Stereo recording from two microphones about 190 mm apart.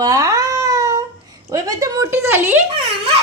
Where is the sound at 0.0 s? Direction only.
20° right (ahead or behind).